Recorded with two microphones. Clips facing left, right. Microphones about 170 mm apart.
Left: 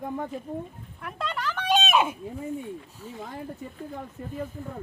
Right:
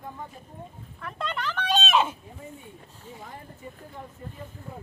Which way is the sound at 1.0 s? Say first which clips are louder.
Even; 5° left (ahead or behind).